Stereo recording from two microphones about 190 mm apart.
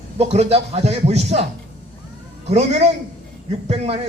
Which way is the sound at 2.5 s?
35° right (ahead or behind).